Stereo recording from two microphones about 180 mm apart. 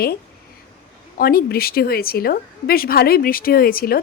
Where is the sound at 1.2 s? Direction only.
55° left (ahead or behind).